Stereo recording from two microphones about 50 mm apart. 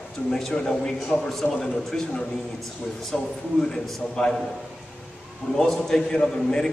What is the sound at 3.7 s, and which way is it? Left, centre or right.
Speech, centre.